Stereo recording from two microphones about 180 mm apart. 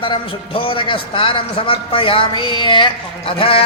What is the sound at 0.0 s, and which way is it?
A man's voice, 30° left (ahead or behind).